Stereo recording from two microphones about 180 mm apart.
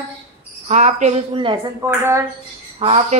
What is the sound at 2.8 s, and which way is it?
Speech, 35° right (ahead or behind).